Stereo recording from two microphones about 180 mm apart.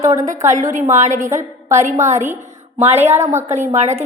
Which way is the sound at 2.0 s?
40° right (ahead or behind).